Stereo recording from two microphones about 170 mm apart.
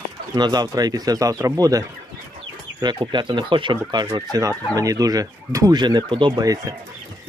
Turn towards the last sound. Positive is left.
turn(degrees=-20)  # may be behind; listen again after turning